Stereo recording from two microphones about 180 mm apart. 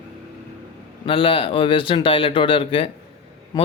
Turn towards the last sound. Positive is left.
turn(degrees=20)  # may be behind; listen again after turning